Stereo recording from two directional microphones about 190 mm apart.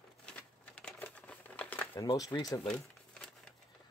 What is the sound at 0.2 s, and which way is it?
Crumpling, 5° left (ahead or behind).